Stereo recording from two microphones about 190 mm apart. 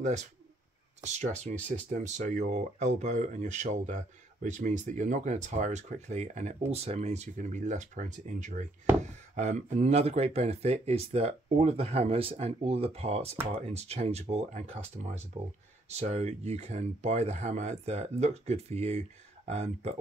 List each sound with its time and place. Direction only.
0.0 s speech: 40° right (ahead or behind)